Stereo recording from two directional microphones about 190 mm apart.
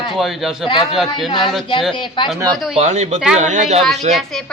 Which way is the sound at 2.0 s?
25° left (ahead or behind).